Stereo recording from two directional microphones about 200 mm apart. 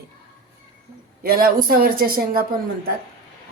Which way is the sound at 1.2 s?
50° right (ahead or behind).